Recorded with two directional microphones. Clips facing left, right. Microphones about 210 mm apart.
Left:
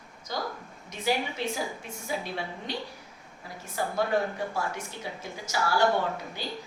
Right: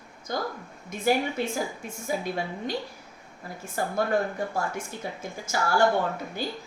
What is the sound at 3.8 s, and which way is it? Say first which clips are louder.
Speech: right 1 dB; 45° right (ahead or behind).